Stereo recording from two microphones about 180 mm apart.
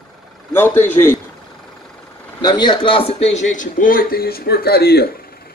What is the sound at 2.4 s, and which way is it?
A man's voice, 25° left (ahead or behind).